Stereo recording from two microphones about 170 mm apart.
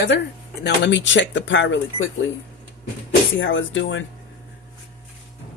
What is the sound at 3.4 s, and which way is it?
Speech, 90° left.